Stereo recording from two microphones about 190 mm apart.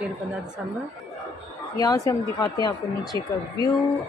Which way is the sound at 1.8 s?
20° left (ahead or behind).